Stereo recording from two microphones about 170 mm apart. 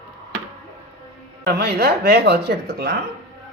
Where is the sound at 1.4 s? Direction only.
65° right (ahead or behind).